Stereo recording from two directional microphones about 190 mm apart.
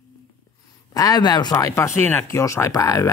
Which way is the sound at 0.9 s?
20° left (ahead or behind).